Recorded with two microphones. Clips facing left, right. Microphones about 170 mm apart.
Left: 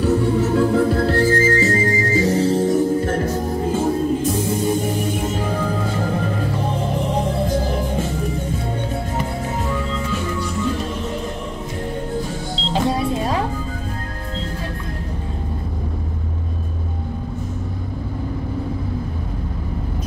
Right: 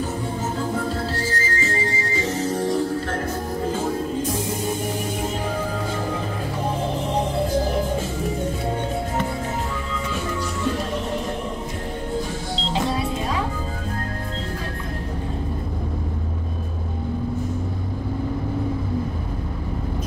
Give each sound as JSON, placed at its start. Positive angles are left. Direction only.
{"t": 0.0, "sound": "music", "side_deg": 70}
{"t": 1.6, "sound": "music", "side_deg": 40}